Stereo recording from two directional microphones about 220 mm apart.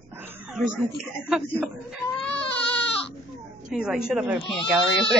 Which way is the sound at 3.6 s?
5° right (ahead or behind).